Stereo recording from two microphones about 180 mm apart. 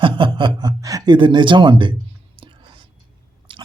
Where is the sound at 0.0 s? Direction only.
25° right (ahead or behind).